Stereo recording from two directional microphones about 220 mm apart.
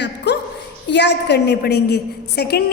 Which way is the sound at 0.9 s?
50° left (ahead or behind).